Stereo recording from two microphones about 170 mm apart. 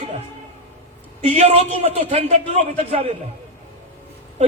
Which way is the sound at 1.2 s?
40° right (ahead or behind).